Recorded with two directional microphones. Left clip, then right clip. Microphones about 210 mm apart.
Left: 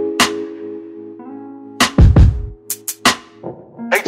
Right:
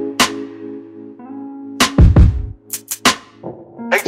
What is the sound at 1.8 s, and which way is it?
Music, centre (ahead or behind).